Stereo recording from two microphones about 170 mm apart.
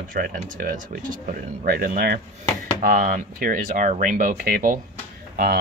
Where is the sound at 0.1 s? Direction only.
55° right (ahead or behind).